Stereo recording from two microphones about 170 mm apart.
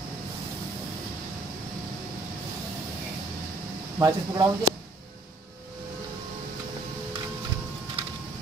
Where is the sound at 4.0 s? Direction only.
20° right (ahead or behind).